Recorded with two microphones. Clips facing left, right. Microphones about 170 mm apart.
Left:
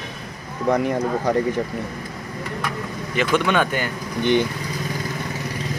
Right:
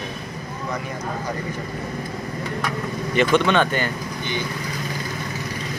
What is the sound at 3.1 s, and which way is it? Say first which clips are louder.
Cutlery: right 2 dB; 5° left (ahead or behind).